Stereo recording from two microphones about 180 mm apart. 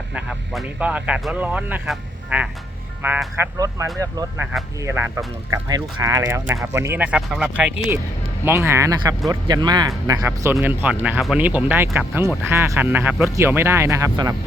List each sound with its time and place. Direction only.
0.1 s speech: 5° right (ahead or behind)